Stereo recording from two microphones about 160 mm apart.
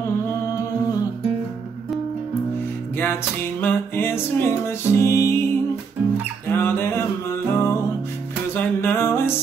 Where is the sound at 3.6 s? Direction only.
15° left (ahead or behind).